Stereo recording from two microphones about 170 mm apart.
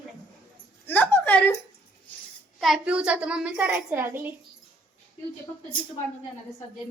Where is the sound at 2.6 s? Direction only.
Centre (ahead or behind).